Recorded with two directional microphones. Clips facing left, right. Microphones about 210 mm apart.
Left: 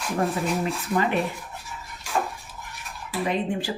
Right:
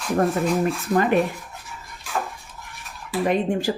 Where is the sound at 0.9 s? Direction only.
45° right (ahead or behind).